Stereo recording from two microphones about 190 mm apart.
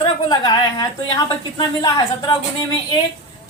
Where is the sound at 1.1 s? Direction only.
20° left (ahead or behind).